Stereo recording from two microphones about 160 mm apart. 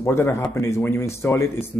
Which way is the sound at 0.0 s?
15° left (ahead or behind).